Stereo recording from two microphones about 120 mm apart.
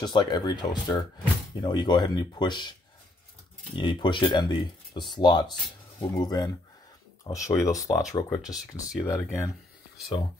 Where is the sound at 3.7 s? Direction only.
40° left (ahead or behind); by 9.5 s 25° left (ahead or behind).